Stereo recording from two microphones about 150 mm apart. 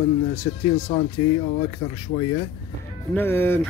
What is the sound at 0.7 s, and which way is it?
Speech, 45° left (ahead or behind).